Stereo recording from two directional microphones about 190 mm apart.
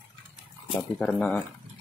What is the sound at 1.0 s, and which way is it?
Speech, 5° left (ahead or behind).